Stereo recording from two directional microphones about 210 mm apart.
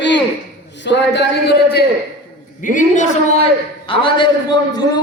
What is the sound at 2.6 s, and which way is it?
Speech, 40° left (ahead or behind).